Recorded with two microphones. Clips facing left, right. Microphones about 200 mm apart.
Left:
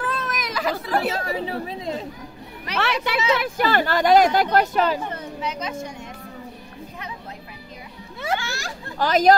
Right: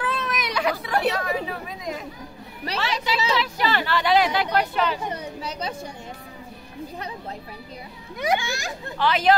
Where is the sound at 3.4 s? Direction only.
50° left (ahead or behind).